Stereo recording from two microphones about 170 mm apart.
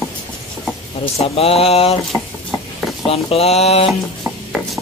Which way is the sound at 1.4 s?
35° left (ahead or behind).